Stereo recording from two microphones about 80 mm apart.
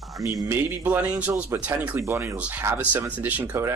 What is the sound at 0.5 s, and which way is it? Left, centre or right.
Speech, right.